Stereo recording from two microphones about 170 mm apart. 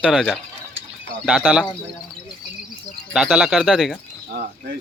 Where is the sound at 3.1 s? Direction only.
5° right (ahead or behind).